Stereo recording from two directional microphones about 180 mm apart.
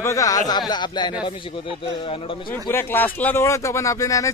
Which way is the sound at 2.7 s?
10° left (ahead or behind).